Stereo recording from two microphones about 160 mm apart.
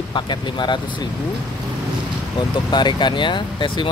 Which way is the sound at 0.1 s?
30° left (ahead or behind).